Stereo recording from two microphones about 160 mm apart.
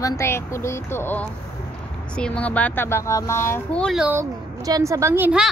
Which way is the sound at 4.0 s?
10° right (ahead or behind).